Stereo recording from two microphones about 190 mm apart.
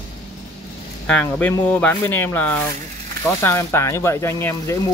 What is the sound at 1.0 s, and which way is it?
Speech, 5° left (ahead or behind).